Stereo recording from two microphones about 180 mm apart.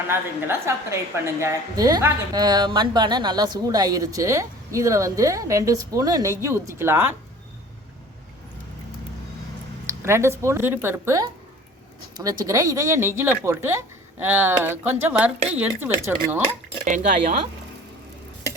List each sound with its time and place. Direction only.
0.1 s a woman's voice: 15° right (ahead or behind)
10.0 s speech: 15° right (ahead or behind)
16.8 s speech: 45° right (ahead or behind)